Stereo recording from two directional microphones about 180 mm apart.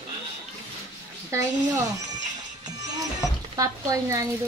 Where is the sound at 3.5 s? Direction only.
20° right (ahead or behind).